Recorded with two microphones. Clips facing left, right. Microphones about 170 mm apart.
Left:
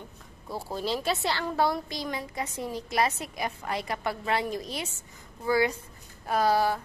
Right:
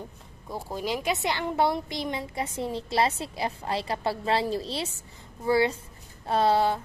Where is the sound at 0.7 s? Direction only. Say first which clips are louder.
Right 1 dB; 15° right (ahead or behind).